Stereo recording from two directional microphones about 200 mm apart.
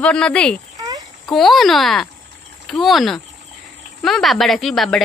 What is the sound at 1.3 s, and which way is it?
A woman's voice, centre (ahead or behind).